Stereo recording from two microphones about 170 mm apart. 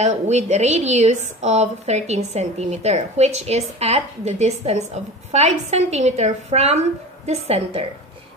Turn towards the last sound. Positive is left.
turn(degrees=-35)  # may be behind; listen again after turning